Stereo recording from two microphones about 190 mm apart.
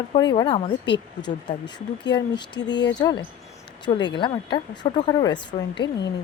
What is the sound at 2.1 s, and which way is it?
Speech, 25° left (ahead or behind).